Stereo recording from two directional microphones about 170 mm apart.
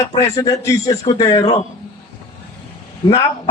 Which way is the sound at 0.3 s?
20° left (ahead or behind).